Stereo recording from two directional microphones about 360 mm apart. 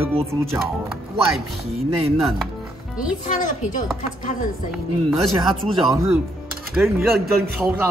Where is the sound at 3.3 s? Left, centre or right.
Left.